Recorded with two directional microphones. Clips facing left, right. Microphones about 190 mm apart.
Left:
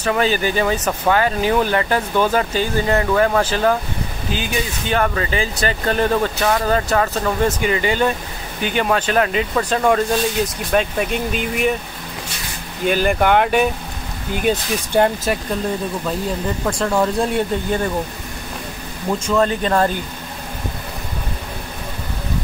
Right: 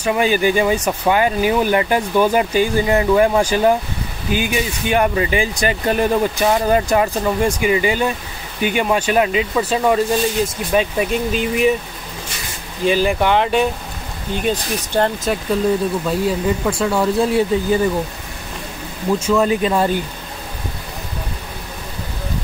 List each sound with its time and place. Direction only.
0.0 s speech: 10° right (ahead or behind)
12.9 s speech: 5° left (ahead or behind)
16.6 s speech: 5° right (ahead or behind)
19.1 s speech: 10° right (ahead or behind)